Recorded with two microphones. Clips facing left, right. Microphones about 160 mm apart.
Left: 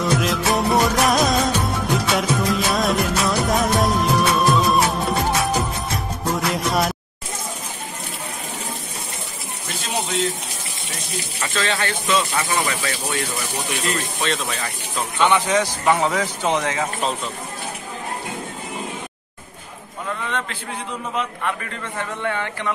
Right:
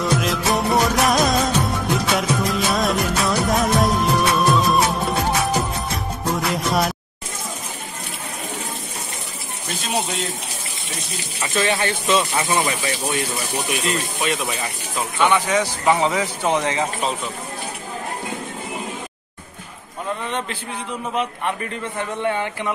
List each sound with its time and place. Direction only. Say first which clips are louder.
0.0 s music: left 1 dB; centre (ahead or behind)
11.5 s speech: right 3 dB; 20° right (ahead or behind)
14.2 s speech: even; 10° right (ahead or behind)
20.2 s speech: right 1 dB; 20° right (ahead or behind)